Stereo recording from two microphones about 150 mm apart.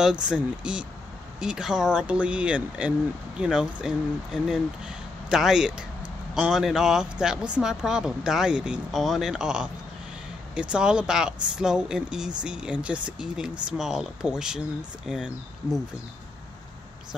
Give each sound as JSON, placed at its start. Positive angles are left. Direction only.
{"t": 0.0, "sound": "speech", "side_deg": -5}